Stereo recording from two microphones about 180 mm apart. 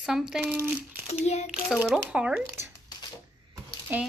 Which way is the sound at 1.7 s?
5° right (ahead or behind).